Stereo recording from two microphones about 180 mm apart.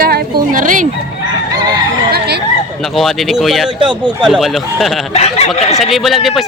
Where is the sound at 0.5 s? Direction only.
45° right (ahead or behind).